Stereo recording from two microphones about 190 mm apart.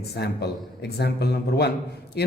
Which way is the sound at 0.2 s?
60° left (ahead or behind).